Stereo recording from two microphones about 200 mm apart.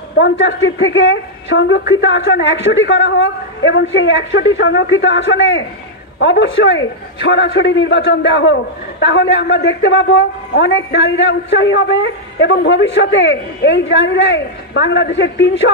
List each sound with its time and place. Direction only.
0.2 s a woman's voice: 65° left (ahead or behind)